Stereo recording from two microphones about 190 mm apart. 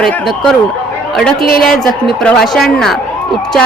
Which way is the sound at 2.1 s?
Centre (ahead or behind).